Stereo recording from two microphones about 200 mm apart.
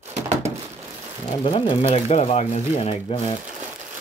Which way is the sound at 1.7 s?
30° left (ahead or behind).